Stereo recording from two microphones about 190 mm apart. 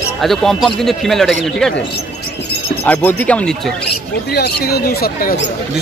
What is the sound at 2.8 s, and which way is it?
Speech, 10° left (ahead or behind).